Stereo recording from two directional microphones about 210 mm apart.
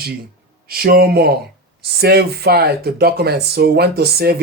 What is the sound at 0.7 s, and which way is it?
Speech, 45° right (ahead or behind).